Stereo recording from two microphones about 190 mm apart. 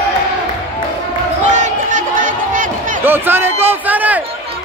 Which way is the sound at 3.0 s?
10° right (ahead or behind).